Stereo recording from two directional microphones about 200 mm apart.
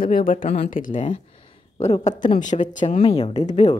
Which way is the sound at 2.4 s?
35° left (ahead or behind).